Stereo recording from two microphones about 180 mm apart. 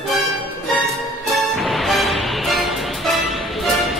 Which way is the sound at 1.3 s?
Centre (ahead or behind).